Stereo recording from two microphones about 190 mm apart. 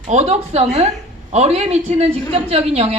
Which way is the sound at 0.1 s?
35° right (ahead or behind).